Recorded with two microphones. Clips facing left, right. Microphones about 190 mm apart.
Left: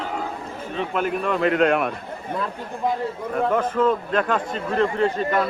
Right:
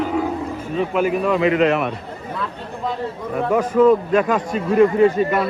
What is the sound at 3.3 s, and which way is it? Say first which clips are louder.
A man's voice: right 5 dB; 10° right (ahead or behind).